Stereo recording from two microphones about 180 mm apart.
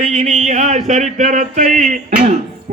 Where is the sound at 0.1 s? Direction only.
40° right (ahead or behind).